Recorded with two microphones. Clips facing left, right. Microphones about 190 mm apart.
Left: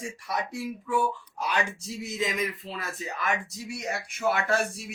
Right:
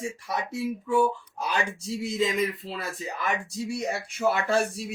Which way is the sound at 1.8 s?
30° right (ahead or behind).